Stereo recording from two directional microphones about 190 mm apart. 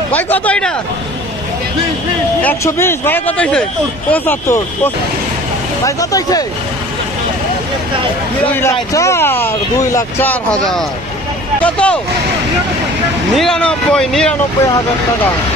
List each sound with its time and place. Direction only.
0.1 s speech: 10° left (ahead or behind)
2.4 s speech: 15° left (ahead or behind)
5.9 s speech: 20° left (ahead or behind)
8.5 s speech: 15° left (ahead or behind)
13.4 s speech: 5° left (ahead or behind)